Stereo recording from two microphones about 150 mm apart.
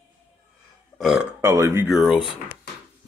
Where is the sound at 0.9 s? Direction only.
Centre (ahead or behind).